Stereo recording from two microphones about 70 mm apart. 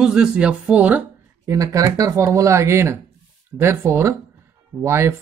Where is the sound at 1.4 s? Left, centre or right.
Right.